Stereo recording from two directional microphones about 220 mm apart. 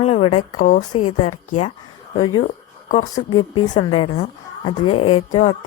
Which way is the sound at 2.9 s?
35° left (ahead or behind).